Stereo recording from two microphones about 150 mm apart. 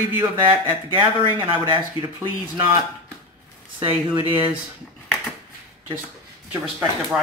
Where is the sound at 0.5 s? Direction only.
35° right (ahead or behind).